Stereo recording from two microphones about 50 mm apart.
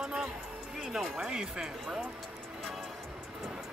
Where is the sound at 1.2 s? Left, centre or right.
Centre.